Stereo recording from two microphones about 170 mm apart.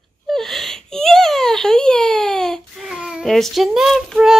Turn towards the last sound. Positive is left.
turn(degrees=0)  # may be behind; listen again after turning